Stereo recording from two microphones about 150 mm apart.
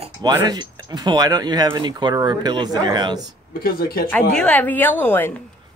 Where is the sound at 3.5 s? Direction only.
80° left.